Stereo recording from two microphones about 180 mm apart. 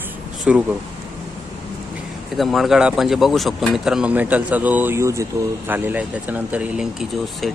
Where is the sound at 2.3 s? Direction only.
Centre (ahead or behind).